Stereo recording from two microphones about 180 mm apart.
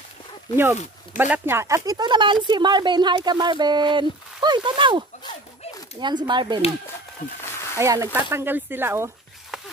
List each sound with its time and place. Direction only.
1.1 s speech: 10° right (ahead or behind)
7.4 s a sound: 15° left (ahead or behind)
7.8 s speech: 15° right (ahead or behind)